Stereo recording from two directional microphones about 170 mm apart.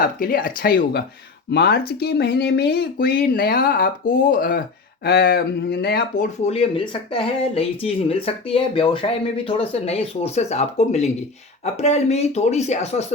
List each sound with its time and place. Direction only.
0.0 s speech: 55° left (ahead or behind)
6.5 s speech: 35° left (ahead or behind)